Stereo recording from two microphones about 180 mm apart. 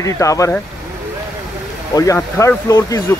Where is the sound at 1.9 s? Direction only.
15° left (ahead or behind).